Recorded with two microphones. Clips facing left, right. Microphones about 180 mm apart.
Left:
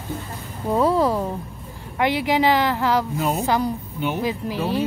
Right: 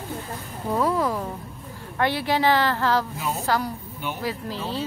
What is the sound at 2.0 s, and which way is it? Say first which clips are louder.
Speech: left 3 dB; 15° left (ahead or behind).